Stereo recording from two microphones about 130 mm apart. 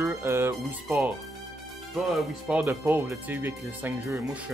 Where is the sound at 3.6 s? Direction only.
25° right (ahead or behind).